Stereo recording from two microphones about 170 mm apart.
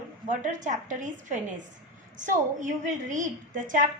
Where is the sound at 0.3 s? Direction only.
45° right (ahead or behind).